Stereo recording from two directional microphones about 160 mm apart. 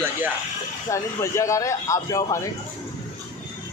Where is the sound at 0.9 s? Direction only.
20° left (ahead or behind).